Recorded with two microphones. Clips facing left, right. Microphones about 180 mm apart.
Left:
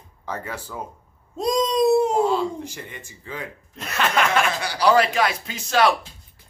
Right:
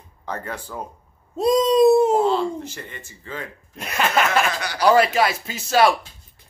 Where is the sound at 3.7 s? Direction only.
10° right (ahead or behind).